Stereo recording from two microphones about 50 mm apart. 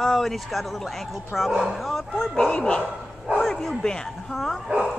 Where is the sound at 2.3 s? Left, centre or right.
Centre.